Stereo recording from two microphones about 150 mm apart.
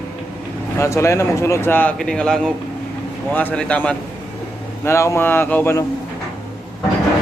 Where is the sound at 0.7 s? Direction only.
20° left (ahead or behind).